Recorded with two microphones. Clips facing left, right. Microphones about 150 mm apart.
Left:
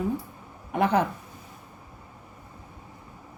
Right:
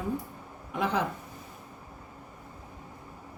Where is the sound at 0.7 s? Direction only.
60° left (ahead or behind).